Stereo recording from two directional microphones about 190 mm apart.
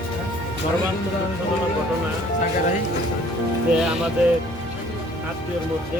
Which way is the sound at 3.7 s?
5° right (ahead or behind).